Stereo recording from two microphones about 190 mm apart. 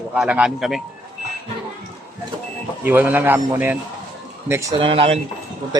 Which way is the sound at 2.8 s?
10° right (ahead or behind).